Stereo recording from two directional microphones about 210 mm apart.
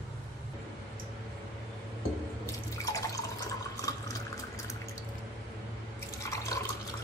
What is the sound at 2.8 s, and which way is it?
Drip, 15° left (ahead or behind).